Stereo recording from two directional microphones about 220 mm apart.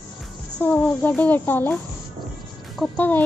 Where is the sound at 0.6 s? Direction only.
5° left (ahead or behind).